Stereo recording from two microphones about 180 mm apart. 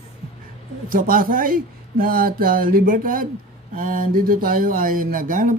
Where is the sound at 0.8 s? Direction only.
50° right (ahead or behind).